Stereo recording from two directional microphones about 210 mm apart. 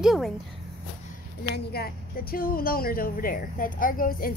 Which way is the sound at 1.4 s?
50° left (ahead or behind).